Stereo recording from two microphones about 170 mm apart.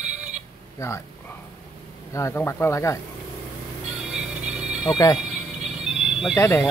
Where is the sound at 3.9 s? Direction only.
5° right (ahead or behind).